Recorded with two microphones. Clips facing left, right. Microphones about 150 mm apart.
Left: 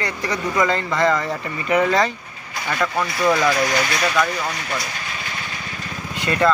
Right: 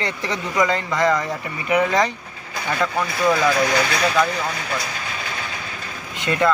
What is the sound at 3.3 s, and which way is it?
Speech, centre (ahead or behind).